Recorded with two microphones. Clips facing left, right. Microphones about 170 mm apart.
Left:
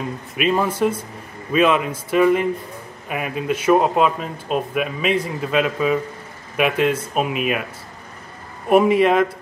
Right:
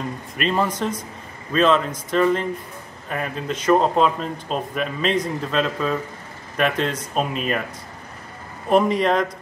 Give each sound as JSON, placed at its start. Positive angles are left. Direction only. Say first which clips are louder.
{"t": 0.4, "sound": "a man's voice", "louder": "left 4 dB", "side_deg": 10}
{"t": 8.6, "sound": "speech", "louder": "left 3 dB", "side_deg": 10}